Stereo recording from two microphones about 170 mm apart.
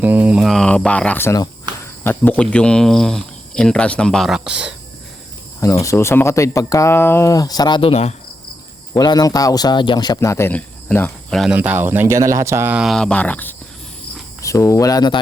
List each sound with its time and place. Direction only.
0.0 s a sound: 10° right (ahead or behind)
0.3 s speech: centre (ahead or behind)
5.8 s speech: 15° left (ahead or behind); by 8.1 s 35° left (ahead or behind)
8.9 s speech: 25° left (ahead or behind)
11.3 s speech: 5° right (ahead or behind); by 15.2 s 25° left (ahead or behind)